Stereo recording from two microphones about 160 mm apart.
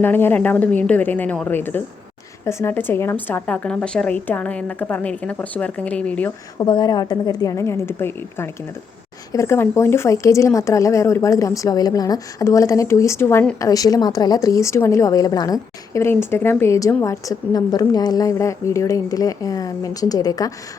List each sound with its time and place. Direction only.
0.0 s a woman's voice: 10° left (ahead or behind)
6.6 s a woman's voice: 25° left (ahead or behind); by 13.6 s 10° left (ahead or behind)
13.6 s a woman's voice: 20° left (ahead or behind)